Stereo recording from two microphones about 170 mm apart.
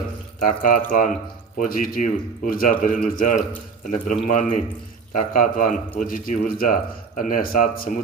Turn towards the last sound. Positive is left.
turn(degrees=55)  # may be behind; listen again after turning